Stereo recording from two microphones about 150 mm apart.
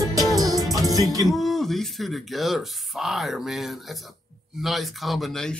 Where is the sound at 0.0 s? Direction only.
25° right (ahead or behind).